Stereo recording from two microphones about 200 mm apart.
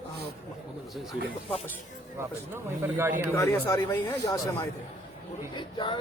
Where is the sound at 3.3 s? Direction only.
15° left (ahead or behind).